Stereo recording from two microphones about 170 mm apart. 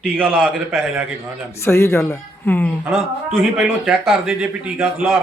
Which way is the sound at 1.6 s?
15° left (ahead or behind).